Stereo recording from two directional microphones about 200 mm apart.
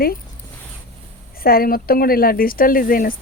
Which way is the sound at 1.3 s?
50° left (ahead or behind).